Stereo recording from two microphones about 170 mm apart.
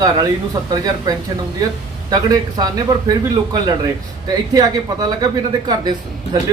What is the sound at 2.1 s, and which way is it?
A man's voice, 20° right (ahead or behind).